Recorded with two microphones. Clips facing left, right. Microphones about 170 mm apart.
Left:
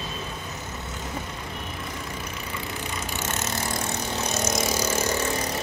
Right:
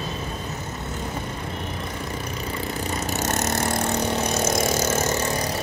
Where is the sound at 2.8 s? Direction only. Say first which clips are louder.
Right 7 dB; 40° right (ahead or behind).